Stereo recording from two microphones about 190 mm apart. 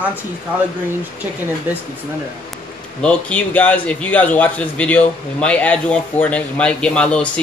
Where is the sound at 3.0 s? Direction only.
5° left (ahead or behind).